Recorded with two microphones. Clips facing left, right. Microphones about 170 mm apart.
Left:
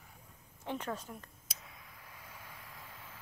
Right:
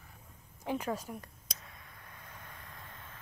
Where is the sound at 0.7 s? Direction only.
10° right (ahead or behind).